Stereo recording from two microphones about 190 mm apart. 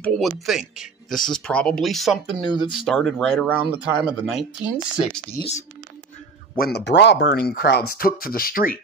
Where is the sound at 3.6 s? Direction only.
25° right (ahead or behind).